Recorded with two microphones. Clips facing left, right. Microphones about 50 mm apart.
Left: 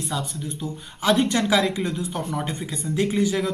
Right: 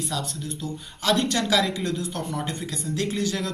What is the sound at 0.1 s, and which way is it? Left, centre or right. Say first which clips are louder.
A woman's voice: left 1 dB; centre.